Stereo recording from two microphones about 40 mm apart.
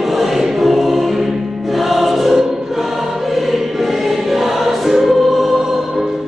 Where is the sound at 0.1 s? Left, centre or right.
Centre.